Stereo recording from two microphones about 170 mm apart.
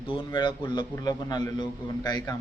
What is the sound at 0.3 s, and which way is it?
Speech, 30° left (ahead or behind).